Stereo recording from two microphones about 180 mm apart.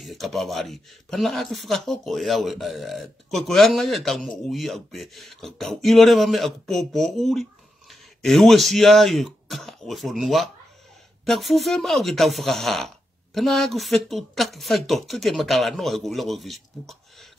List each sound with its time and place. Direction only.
0.0 s speech: centre (ahead or behind)